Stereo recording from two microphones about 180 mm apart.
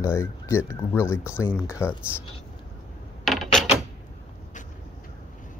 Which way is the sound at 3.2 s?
Centre (ahead or behind).